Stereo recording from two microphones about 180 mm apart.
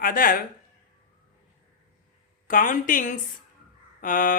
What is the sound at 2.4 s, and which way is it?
Speech, 45° left (ahead or behind).